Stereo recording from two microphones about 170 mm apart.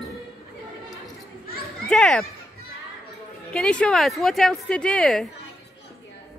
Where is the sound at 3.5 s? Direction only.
5° left (ahead or behind).